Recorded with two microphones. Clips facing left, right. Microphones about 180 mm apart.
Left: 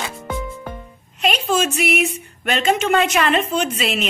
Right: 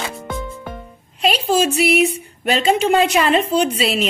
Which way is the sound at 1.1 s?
30° right (ahead or behind).